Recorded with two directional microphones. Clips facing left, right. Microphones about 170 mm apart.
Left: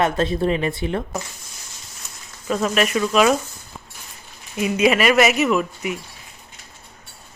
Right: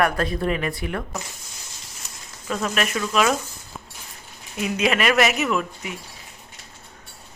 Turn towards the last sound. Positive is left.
turn(degrees=5)  # may be behind; listen again after turning